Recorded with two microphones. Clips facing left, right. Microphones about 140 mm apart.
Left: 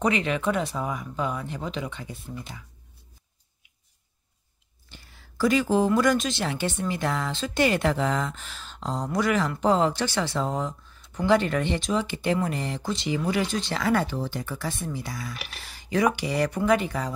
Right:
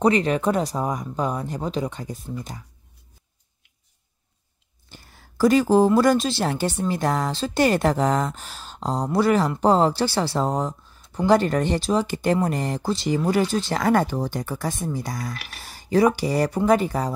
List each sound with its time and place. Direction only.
0.0 s speech: 40° right (ahead or behind)
4.9 s a sound: 45° right (ahead or behind)
5.9 s speech: 35° right (ahead or behind)